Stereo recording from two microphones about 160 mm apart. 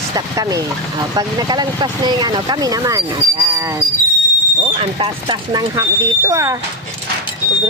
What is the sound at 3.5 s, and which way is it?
Cricket, 20° right (ahead or behind).